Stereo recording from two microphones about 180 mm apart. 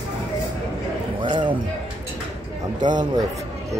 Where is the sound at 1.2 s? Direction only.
25° right (ahead or behind).